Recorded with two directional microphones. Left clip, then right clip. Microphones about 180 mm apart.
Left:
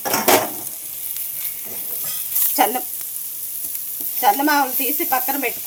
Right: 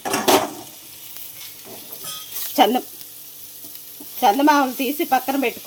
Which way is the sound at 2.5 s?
55° right (ahead or behind).